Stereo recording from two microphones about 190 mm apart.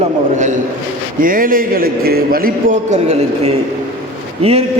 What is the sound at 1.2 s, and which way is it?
A man's voice, 45° right (ahead or behind).